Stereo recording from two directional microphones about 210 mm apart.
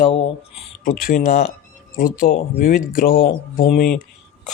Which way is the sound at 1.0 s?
40° left (ahead or behind).